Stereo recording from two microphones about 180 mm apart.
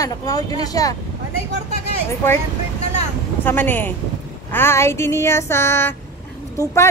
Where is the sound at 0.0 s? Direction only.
20° left (ahead or behind).